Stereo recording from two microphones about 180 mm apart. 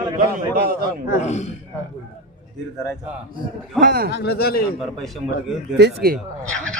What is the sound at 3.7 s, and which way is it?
Speech, 55° right (ahead or behind).